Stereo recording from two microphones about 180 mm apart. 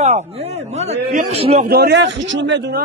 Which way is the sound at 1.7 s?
65° right (ahead or behind).